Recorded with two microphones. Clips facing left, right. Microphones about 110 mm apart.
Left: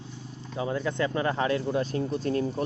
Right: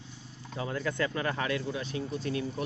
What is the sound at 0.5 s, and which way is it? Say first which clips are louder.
Speech: left 4 dB; 20° left (ahead or behind).